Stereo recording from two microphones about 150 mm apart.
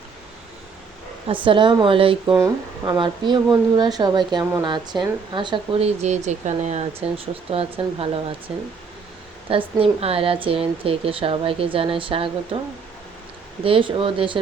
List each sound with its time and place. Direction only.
1.3 s speech: 35° right (ahead or behind)
2.4 s speech: 20° right (ahead or behind); by 8.2 s 40° right (ahead or behind)
8.5 s speech: 5° right (ahead or behind)
9.5 s speech: 40° right (ahead or behind)